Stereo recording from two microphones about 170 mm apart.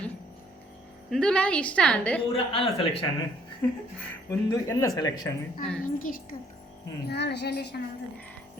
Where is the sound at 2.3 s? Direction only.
30° left (ahead or behind).